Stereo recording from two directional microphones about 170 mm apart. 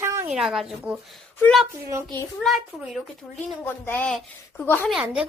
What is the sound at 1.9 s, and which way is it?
Speech, 15° right (ahead or behind).